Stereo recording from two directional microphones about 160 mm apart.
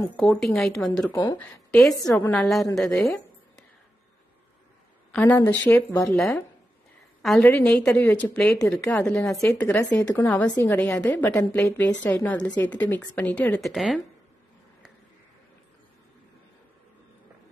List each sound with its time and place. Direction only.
0.1 s a woman's voice: 5° left (ahead or behind)
1.1 s speech: 25° left (ahead or behind)
1.4 s a woman's voice: 5° left (ahead or behind)
2.9 s speech: 20° left (ahead or behind)
5.1 s a woman's voice: 10° left (ahead or behind)
6.0 s a woman's voice: 5° left (ahead or behind)
9.3 s a woman's voice: 15° left (ahead or behind); by 14.0 s centre (ahead or behind)